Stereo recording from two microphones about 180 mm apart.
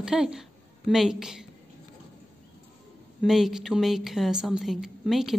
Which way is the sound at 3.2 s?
Centre (ahead or behind).